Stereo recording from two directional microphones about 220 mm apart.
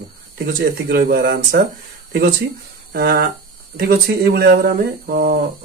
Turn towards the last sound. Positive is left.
turn(degrees=-45)  # may be behind; listen again after turning